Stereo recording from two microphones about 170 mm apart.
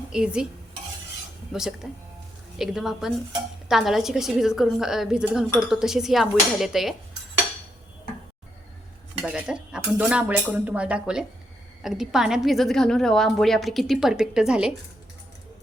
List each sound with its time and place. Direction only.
0.1 s a woman's voice: 5° right (ahead or behind)
1.5 s a woman's voice: 5° right (ahead or behind)
9.2 s a woman's voice: 5° right (ahead or behind)